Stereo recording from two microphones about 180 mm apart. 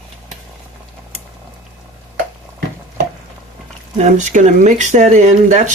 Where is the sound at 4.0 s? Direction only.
40° right (ahead or behind).